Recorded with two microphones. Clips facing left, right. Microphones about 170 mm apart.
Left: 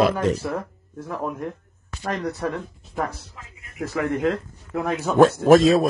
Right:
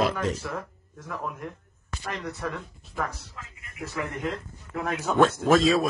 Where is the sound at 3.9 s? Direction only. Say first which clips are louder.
Left 9 dB; 60° left (ahead or behind).